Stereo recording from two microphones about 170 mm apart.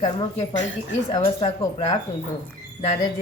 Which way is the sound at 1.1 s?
35° left (ahead or behind).